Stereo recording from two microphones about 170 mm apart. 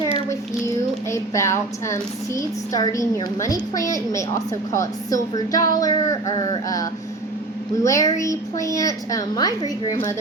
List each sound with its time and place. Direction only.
0.0 s a sound: 15° left (ahead or behind)
1.1 s a woman's voice: 15° left (ahead or behind)
7.9 s a woman's voice: 20° left (ahead or behind)